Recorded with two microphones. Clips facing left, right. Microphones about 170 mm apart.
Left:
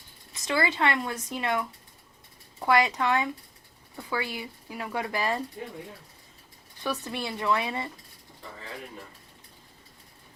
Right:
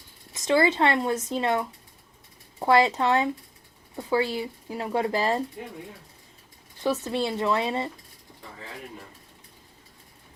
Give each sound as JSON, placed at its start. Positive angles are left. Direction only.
{"t": 0.3, "sound": "speech", "side_deg": -25}
{"t": 6.8, "sound": "speech", "side_deg": -20}